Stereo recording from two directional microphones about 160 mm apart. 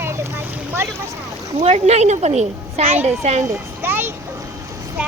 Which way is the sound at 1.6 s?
45° right (ahead or behind).